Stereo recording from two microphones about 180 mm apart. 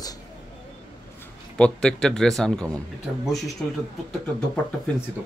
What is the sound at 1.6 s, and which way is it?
Speech, 5° left (ahead or behind).